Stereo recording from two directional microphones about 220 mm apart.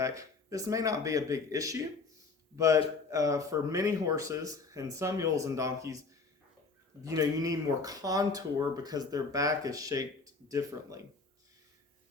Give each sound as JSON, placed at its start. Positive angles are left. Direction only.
{"t": 0.0, "sound": "speech", "side_deg": -15}